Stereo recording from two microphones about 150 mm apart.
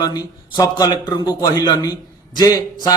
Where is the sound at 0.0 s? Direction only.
25° left (ahead or behind).